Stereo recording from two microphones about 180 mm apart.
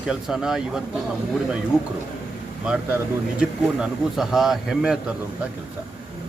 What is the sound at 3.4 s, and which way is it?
A man's voice, 5° right (ahead or behind).